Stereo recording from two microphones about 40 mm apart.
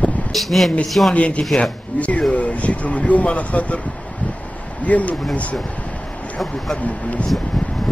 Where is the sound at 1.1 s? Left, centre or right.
Left.